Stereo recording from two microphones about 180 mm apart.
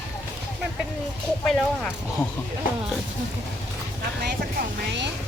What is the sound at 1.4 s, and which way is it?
Speech, centre (ahead or behind).